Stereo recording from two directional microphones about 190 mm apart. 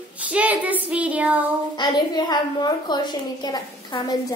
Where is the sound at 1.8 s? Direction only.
20° left (ahead or behind).